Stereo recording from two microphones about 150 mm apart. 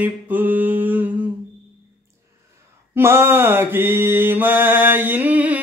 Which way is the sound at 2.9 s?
15° right (ahead or behind).